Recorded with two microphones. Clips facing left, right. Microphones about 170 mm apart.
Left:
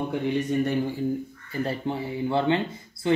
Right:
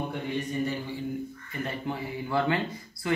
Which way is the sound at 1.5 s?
30° left (ahead or behind).